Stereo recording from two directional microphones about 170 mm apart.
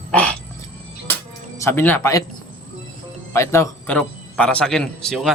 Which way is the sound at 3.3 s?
15° left (ahead or behind).